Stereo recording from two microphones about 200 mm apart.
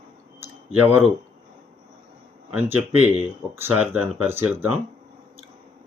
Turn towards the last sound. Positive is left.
turn(degrees=-10)  # may be behind; listen again after turning